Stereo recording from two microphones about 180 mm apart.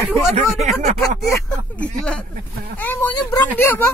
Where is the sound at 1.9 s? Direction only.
5° left (ahead or behind).